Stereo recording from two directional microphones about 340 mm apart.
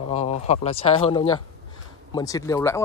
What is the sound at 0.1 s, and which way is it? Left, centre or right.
Speech, centre.